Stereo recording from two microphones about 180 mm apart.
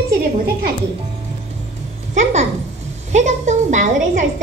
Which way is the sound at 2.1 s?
40° right (ahead or behind).